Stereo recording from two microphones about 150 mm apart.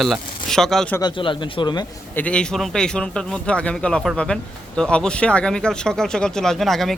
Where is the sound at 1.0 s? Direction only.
30° left (ahead or behind).